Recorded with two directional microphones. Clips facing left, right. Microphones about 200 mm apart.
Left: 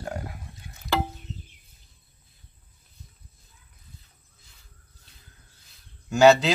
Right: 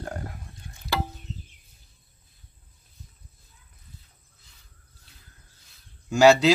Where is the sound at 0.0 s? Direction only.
5° left (ahead or behind).